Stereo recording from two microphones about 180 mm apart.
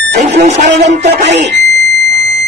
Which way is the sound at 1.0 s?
75° right (ahead or behind).